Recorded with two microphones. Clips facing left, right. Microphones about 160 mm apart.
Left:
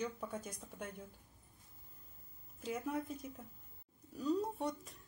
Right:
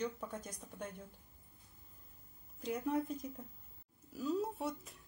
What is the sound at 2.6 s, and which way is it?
Speech, 5° left (ahead or behind).